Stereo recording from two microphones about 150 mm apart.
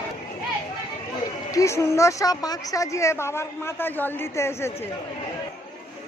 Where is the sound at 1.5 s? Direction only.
20° left (ahead or behind).